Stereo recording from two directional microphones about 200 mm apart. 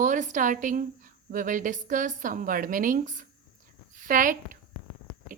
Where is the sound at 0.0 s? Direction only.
40° right (ahead or behind).